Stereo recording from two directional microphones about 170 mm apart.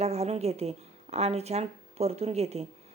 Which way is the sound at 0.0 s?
40° right (ahead or behind).